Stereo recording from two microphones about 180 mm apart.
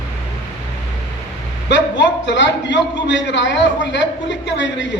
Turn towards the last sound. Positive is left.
turn(degrees=90)